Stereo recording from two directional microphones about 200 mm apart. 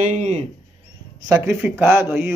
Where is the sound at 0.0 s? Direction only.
40° right (ahead or behind).